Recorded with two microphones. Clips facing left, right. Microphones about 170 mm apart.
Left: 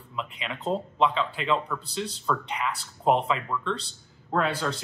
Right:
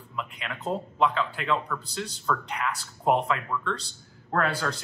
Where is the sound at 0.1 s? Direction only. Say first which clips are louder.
Left 1 dB; centre (ahead or behind).